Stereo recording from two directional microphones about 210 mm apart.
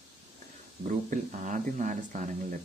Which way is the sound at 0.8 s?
40° right (ahead or behind).